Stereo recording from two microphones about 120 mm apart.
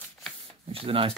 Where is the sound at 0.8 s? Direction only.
50° right (ahead or behind).